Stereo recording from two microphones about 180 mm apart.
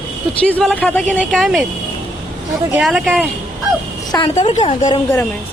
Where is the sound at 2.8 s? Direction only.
Centre (ahead or behind).